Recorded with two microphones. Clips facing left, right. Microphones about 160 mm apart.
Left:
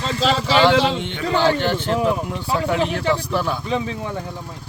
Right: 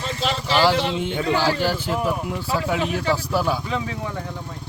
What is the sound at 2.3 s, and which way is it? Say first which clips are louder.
Speech: left 2 dB; centre (ahead or behind).